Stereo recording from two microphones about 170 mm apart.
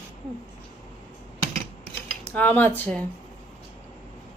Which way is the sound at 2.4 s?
10° left (ahead or behind).